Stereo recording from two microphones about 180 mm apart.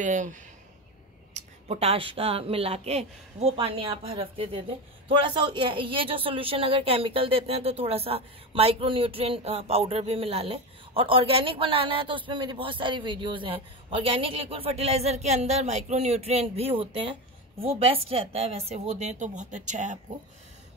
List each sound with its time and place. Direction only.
0.0 s speech: 45° right (ahead or behind)